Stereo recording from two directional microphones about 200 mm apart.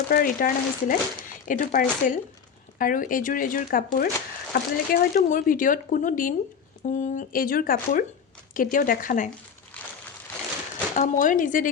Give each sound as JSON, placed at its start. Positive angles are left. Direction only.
{"t": 0.1, "sound": "speech", "side_deg": 45}
{"t": 10.9, "sound": "speech", "side_deg": 40}